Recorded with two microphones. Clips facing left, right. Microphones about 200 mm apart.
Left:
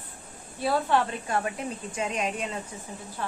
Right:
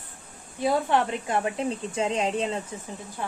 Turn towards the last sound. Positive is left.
turn(degrees=-15)  # may be behind; listen again after turning